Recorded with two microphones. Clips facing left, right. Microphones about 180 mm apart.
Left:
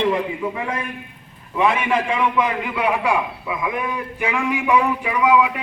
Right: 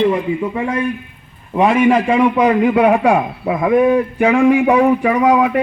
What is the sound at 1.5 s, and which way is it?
A man's voice, 40° right (ahead or behind).